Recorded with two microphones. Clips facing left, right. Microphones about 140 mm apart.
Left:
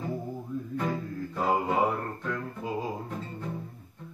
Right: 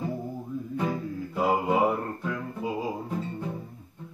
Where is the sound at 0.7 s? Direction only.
10° right (ahead or behind).